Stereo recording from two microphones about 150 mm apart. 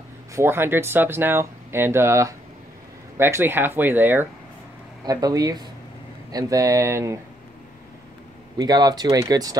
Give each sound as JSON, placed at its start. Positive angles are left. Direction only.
{"t": 0.3, "sound": "speech", "side_deg": -15}
{"t": 5.0, "sound": "speech", "side_deg": -25}
{"t": 8.5, "sound": "speech", "side_deg": -25}